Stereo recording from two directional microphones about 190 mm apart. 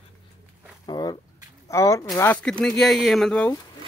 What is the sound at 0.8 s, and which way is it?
Speech, 25° left (ahead or behind).